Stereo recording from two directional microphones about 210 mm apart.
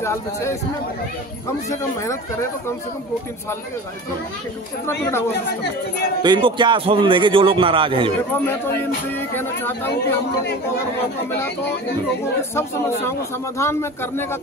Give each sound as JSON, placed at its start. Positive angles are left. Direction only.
{"t": 0.0, "sound": "speech", "side_deg": 15}
{"t": 6.2, "sound": "a man's voice", "side_deg": -20}
{"t": 9.3, "sound": "speech", "side_deg": 10}
{"t": 13.6, "sound": "speech", "side_deg": 10}